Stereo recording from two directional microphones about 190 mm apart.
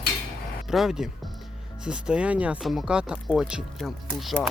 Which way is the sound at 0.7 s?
Centre (ahead or behind).